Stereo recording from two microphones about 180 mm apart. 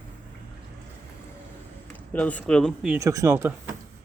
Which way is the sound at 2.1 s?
10° left (ahead or behind).